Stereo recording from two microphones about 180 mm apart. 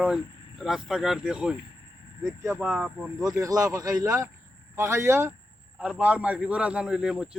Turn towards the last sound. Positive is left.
turn(degrees=-5)  # may be behind; listen again after turning